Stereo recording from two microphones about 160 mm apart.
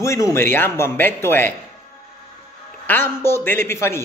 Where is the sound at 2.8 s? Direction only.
15° left (ahead or behind).